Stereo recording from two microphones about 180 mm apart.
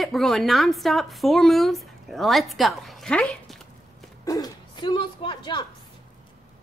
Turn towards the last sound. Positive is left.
turn(degrees=25)  # may be behind; listen again after turning